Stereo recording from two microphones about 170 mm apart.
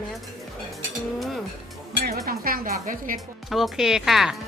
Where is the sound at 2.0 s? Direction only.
60° right (ahead or behind).